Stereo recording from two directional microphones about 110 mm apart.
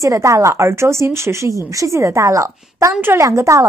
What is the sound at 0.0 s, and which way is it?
A woman's voice, 30° right (ahead or behind).